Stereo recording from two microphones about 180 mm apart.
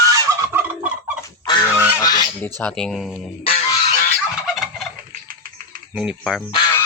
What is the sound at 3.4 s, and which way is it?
Fowl, 35° left (ahead or behind).